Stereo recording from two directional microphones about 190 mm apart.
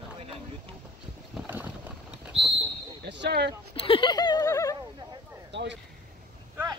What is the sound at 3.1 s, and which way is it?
Basketball bounce, 60° right (ahead or behind).